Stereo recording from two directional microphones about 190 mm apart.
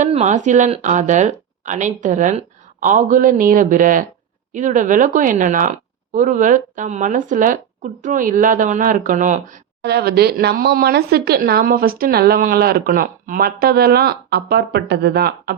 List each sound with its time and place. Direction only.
0.0 s speech: 40° right (ahead or behind)
9.8 s speech: 55° right (ahead or behind)